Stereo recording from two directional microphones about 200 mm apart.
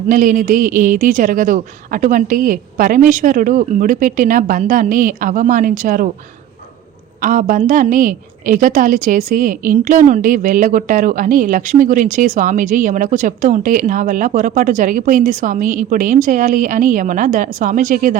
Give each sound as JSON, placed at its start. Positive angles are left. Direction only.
{"t": 0.1, "sound": "a woman's voice", "side_deg": -40}
{"t": 7.2, "sound": "a woman's voice", "side_deg": -40}